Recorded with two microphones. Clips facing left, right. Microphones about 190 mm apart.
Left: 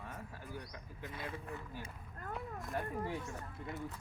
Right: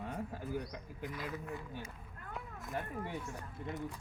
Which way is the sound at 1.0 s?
25° left (ahead or behind).